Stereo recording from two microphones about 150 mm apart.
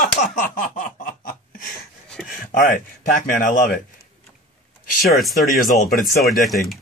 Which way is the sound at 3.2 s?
90° left.